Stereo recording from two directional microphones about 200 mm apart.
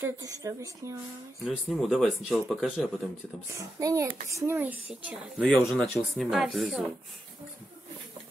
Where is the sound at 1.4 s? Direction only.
Centre (ahead or behind).